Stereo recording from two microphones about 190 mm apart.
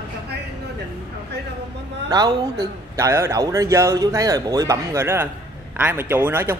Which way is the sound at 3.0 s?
15° right (ahead or behind).